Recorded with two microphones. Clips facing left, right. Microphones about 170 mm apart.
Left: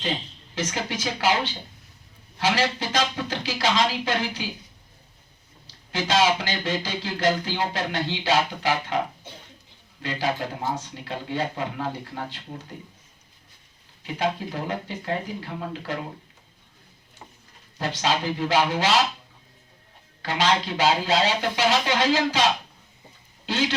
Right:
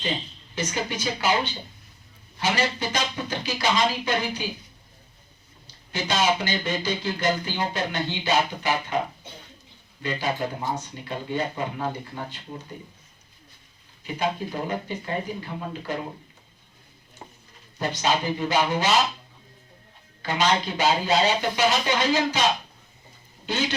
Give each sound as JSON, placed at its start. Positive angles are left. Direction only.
{"t": 0.5, "sound": "speech", "side_deg": 90}
{"t": 5.9, "sound": "speech", "side_deg": 90}
{"t": 10.0, "sound": "speech", "side_deg": 90}
{"t": 14.5, "sound": "speech", "side_deg": 90}
{"t": 17.7, "sound": "speech", "side_deg": 90}
{"t": 20.2, "sound": "speech", "side_deg": 90}